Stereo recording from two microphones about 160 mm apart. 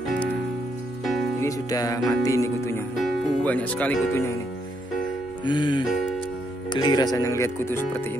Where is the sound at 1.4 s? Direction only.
20° left (ahead or behind).